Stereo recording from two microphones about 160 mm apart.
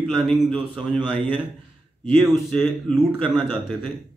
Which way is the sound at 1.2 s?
30° right (ahead or behind).